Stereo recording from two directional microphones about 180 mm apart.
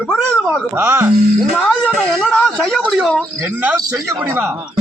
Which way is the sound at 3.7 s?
20° right (ahead or behind).